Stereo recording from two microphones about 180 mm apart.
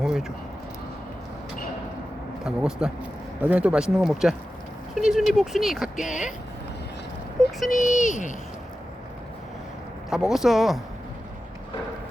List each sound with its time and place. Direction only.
0.0 s a sound: centre (ahead or behind)
2.4 s a man's voice: 5° right (ahead or behind)
6.1 s speech: 45° left (ahead or behind)
7.4 s child singing: centre (ahead or behind)
7.8 s speech: 40° left (ahead or behind)
10.1 s speech: centre (ahead or behind)